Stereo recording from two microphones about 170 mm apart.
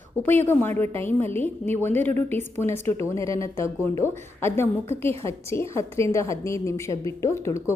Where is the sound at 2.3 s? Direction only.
15° left (ahead or behind).